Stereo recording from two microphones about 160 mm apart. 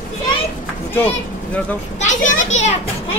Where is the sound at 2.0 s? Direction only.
50° left (ahead or behind).